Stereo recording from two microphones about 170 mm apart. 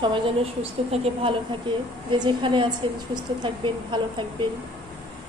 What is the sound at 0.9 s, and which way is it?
Speech, 35° right (ahead or behind).